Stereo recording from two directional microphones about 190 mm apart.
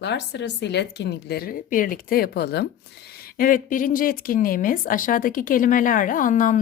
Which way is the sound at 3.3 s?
45° left (ahead or behind).